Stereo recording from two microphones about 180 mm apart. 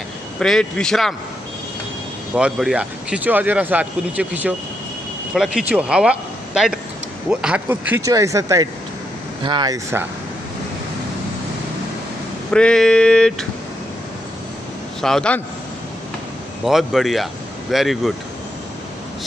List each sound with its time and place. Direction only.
0.4 s speech: 5° left (ahead or behind)
2.3 s speech: 5° right (ahead or behind)
12.4 s speech: 5° left (ahead or behind)
15.0 s speech: 5° left (ahead or behind)
16.6 s speech: centre (ahead or behind)